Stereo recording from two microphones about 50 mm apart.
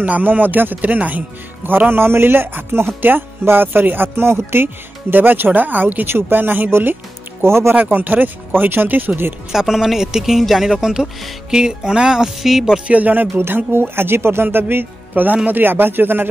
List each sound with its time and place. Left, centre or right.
0.0 s speech: right
1.9 s speech: right
6.0 s speech: right
7.4 s speech: right
7.7 s speech: right
9.5 s speech: centre
12.8 s speech: right
13.7 s speech: right
15.2 s speech: right